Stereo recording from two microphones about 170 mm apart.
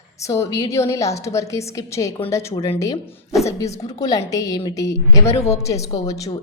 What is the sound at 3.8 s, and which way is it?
A woman's voice, 20° left (ahead or behind).